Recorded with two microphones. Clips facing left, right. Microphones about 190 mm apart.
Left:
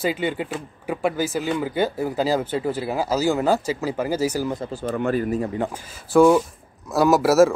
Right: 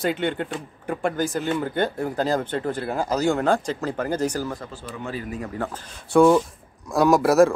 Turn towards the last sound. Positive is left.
turn(degrees=5)  # may be behind; listen again after turning